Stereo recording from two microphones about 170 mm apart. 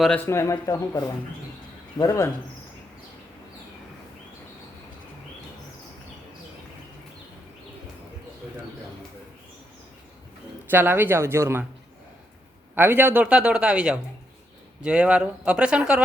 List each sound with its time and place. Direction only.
0.3 s speech: 15° left (ahead or behind)
10.7 s a man's voice: 10° right (ahead or behind)
12.7 s a man's voice: 10° right (ahead or behind)